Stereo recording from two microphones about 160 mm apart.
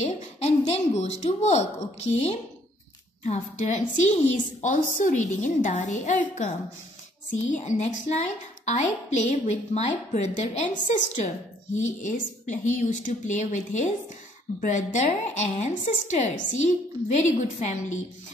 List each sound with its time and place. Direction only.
0.0 s a woman's voice: 45° left (ahead or behind)
7.4 s a woman's voice: 50° left (ahead or behind)